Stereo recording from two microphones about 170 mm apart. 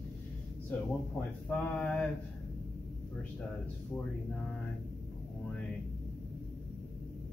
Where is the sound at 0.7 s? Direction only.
10° left (ahead or behind).